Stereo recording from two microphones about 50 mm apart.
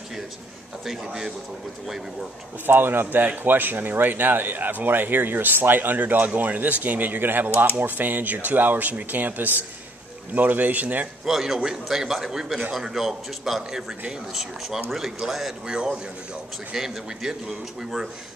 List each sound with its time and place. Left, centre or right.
0.8 s a man's voice: centre
2.6 s a man's voice: right
11.2 s a man's voice: centre
15.6 s a man's voice: centre